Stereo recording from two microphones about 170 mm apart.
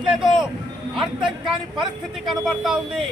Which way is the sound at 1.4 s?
Centre (ahead or behind).